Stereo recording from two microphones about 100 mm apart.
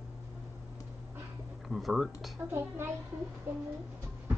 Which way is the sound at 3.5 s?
20° right (ahead or behind).